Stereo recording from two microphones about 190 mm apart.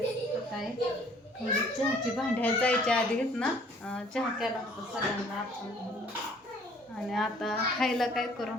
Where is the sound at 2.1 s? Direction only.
5° left (ahead or behind).